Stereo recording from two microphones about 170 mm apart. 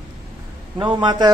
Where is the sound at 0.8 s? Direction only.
25° right (ahead or behind).